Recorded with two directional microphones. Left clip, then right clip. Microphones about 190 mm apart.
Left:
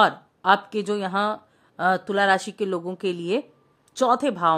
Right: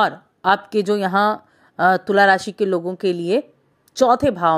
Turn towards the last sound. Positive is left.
turn(degrees=-10)  # may be behind; listen again after turning